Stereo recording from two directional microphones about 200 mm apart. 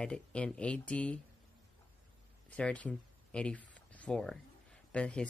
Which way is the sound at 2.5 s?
5° left (ahead or behind).